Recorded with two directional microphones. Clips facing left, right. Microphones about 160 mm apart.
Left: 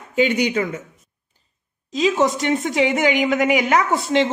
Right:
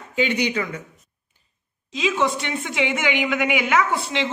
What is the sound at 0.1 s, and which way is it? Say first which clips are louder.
Speech: left 4 dB; 45° left (ahead or behind).